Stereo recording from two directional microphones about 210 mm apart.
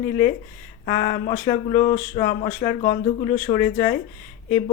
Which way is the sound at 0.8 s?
25° left (ahead or behind).